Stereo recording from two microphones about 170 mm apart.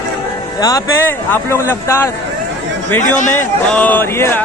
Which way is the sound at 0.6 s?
20° left (ahead or behind).